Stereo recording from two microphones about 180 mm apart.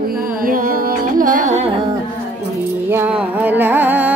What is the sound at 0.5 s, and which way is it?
Music, 50° right (ahead or behind).